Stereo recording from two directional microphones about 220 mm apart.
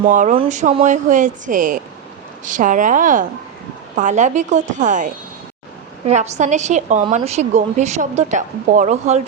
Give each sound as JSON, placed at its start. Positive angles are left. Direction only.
{"t": 0.0, "sound": "a woman's voice", "side_deg": -35}
{"t": 6.1, "sound": "a woman's voice", "side_deg": -30}